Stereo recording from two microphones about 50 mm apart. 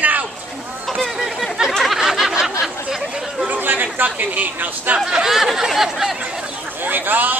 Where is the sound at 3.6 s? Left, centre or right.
Right.